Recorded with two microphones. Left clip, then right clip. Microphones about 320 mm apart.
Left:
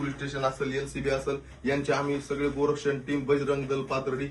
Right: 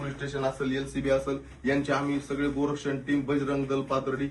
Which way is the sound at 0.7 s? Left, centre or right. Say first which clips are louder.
Right 2 dB; centre.